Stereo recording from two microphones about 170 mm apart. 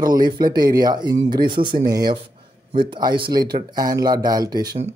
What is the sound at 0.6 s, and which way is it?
Speech, 25° right (ahead or behind).